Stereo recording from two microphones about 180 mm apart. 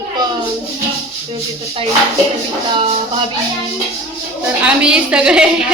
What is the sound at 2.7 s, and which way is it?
Speech, 25° right (ahead or behind).